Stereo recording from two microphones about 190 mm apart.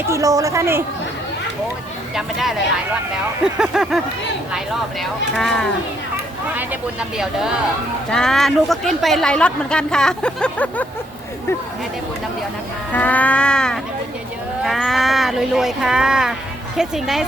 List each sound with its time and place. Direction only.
0.1 s speech: 15° right (ahead or behind)
2.1 s speech: centre (ahead or behind)
7.2 s speech: 5° right (ahead or behind)
12.9 s a sound: 10° left (ahead or behind)
14.6 s speech: centre (ahead or behind)